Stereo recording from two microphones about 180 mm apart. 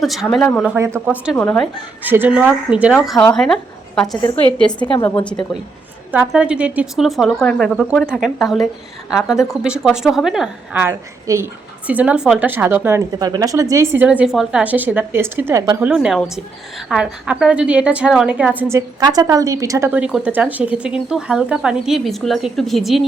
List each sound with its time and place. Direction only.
0.0 s a woman's voice: centre (ahead or behind)
0.9 s a woman's voice: 5° right (ahead or behind)
1.4 s a woman's voice: 5° left (ahead or behind)
2.0 s a woman's voice: 10° right (ahead or behind)
4.2 s a woman's voice: 30° left (ahead or behind)
6.1 s a woman's voice: 10° right (ahead or behind)
16.0 s a woman's voice: centre (ahead or behind)
18.9 s a woman's voice: 20° right (ahead or behind); by 23.0 s centre (ahead or behind)